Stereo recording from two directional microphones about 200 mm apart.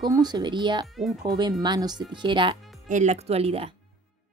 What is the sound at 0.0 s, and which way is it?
Speech, 20° right (ahead or behind).